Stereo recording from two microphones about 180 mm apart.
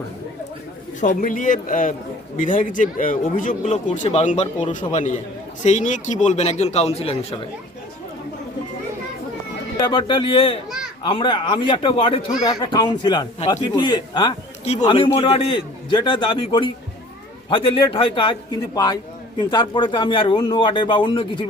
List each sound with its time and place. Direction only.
1.0 s a man's voice: 45° left (ahead or behind)
9.7 s a man's voice: 25° left (ahead or behind)
14.6 s a man's voice: 35° left (ahead or behind)